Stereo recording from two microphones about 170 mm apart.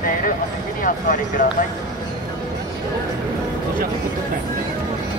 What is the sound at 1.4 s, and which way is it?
Speech, 50° left (ahead or behind).